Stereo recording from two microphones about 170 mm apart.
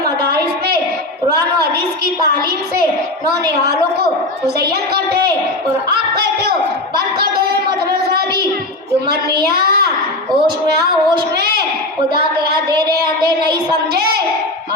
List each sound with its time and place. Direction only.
4.6 s a woman's voice: 65° right (ahead or behind)
8.0 s child singing: 65° right (ahead or behind)
9.6 s a child's voice: 65° right (ahead or behind)
12.8 s a woman's voice: 70° right (ahead or behind)